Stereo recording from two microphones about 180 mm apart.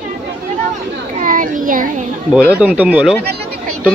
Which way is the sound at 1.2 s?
50° right (ahead or behind).